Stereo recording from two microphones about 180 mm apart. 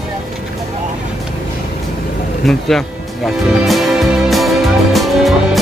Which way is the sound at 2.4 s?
Centre (ahead or behind).